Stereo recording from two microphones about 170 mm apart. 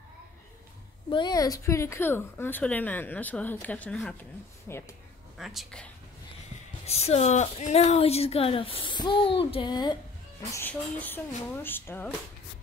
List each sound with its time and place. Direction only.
1.1 s speech: 25° left (ahead or behind)
5.4 s speech: centre (ahead or behind)
6.9 s speech: 40° left (ahead or behind)
10.5 s speech: 10° left (ahead or behind)